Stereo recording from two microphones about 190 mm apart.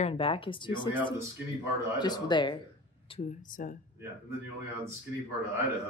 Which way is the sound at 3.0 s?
35° left (ahead or behind).